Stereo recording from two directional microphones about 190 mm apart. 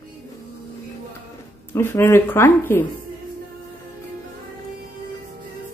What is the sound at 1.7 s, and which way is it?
Speech, 10° left (ahead or behind).